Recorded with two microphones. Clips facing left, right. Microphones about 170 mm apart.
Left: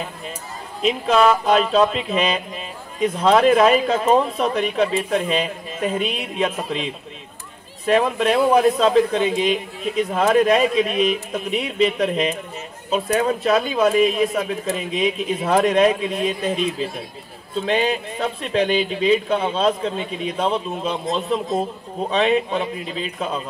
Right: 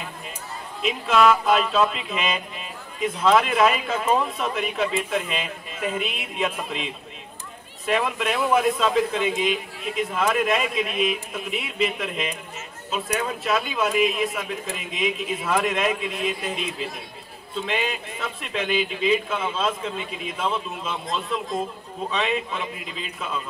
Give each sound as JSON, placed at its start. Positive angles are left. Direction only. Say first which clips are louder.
{"t": 0.8, "sound": "speech", "louder": "left 3 dB", "side_deg": 35}